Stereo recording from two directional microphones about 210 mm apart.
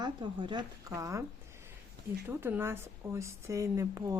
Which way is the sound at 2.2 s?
10° right (ahead or behind).